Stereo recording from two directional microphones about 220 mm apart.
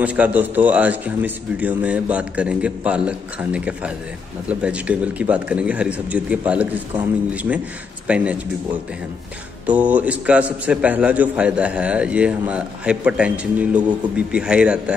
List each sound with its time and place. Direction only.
0.0 s a man's voice: 5° right (ahead or behind)
8.1 s a man's voice: 5° right (ahead or behind)
9.7 s a man's voice: 5° right (ahead or behind)